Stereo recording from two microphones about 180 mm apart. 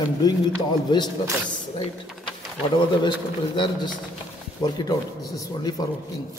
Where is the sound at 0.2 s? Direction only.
20° left (ahead or behind).